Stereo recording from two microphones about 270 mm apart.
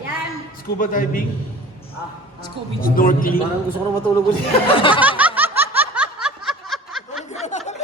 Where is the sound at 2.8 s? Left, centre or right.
Left.